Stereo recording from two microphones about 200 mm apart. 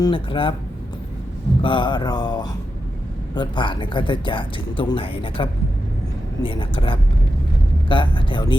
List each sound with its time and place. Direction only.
0.0 s speech: 25° left (ahead or behind)
1.6 s speech: 25° left (ahead or behind)